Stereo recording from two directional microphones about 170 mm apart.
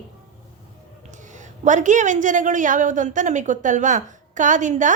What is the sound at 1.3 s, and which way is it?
A woman's voice, 45° right (ahead or behind).